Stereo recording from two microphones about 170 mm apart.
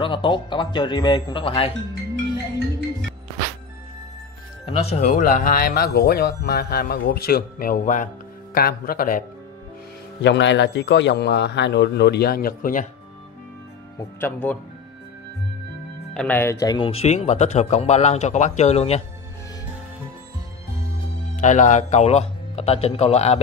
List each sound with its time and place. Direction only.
0.0 s speech: 30° left (ahead or behind)
4.6 s speech: 40° left (ahead or behind)
8.5 s speech: 60° left (ahead or behind)
10.2 s a man's voice: 90° left; by 12.8 s 55° left (ahead or behind)
13.9 s speech: 10° left (ahead or behind)
16.1 s speech: 5° left (ahead or behind); by 19.0 s 40° left (ahead or behind)
21.4 s speech: 45° left (ahead or behind)